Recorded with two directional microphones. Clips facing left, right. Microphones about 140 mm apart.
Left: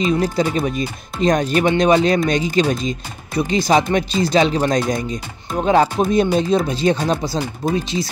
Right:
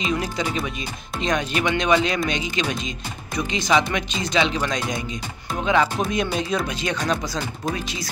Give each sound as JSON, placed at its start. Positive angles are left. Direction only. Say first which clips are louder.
{"t": 0.2, "sound": "speech", "louder": "left 7 dB", "side_deg": 40}